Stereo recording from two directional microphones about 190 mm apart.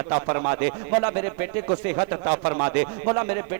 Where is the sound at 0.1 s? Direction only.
20° right (ahead or behind).